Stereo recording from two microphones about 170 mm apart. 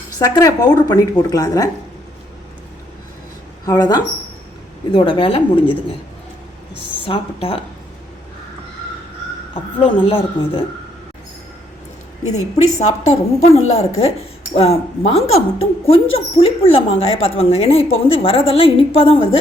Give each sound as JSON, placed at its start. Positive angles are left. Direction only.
{"t": 0.2, "sound": "speech", "side_deg": 20}
{"t": 3.7, "sound": "speech", "side_deg": 25}
{"t": 7.1, "sound": "speech", "side_deg": 35}
{"t": 9.7, "sound": "speech", "side_deg": 30}
{"t": 13.1, "sound": "speech", "side_deg": 40}